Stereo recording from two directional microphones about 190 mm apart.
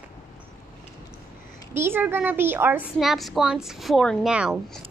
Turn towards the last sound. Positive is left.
turn(degrees=-5)  # may be behind; listen again after turning